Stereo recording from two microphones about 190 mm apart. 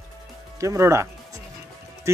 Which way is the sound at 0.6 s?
15° right (ahead or behind).